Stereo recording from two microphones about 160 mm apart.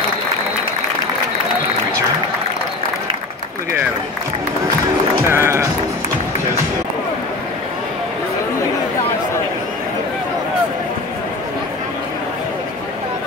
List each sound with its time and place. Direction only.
5.3 s music: 15° right (ahead or behind)